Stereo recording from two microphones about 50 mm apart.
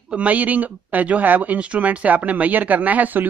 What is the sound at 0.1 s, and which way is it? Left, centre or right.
A man's voice, right.